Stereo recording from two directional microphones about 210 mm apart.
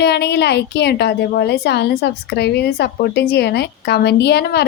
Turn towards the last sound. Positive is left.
turn(degrees=50)  # may be behind; listen again after turning